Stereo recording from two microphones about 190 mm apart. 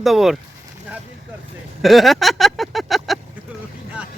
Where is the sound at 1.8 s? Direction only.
Centre (ahead or behind).